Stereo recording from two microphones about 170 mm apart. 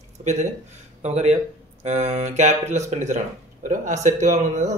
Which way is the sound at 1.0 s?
40° right (ahead or behind).